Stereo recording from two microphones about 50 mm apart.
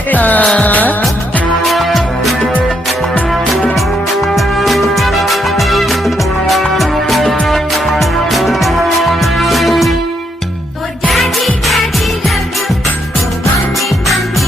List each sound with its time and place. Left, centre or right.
0.1 s music: left
1.6 s music: centre
3.8 s music: centre
11.1 s music: centre